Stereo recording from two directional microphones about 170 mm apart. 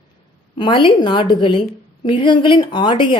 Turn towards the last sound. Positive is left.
turn(degrees=25)  # may be behind; listen again after turning